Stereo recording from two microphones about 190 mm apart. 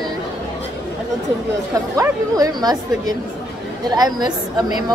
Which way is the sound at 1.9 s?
20° right (ahead or behind).